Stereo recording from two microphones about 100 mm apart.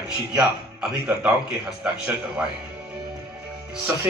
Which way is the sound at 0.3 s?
10° right (ahead or behind).